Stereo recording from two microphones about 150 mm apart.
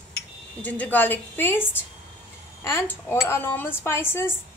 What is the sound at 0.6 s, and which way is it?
A woman's voice, 10° left (ahead or behind).